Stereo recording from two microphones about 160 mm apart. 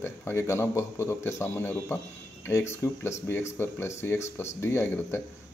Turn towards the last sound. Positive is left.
turn(degrees=15)  # may be behind; listen again after turning